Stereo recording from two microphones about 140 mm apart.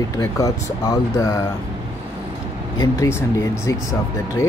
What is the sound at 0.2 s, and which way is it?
Speech, 25° left (ahead or behind).